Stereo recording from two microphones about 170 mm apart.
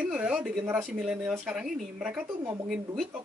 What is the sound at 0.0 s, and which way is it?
Speech, 10° right (ahead or behind).